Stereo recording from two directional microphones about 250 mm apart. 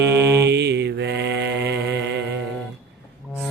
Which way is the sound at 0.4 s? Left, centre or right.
Right.